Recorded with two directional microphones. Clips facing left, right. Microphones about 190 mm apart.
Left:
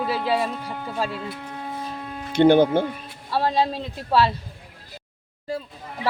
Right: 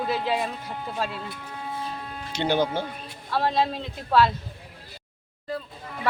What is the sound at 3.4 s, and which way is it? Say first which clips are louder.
Speech: left 2 dB; 35° left (ahead or behind).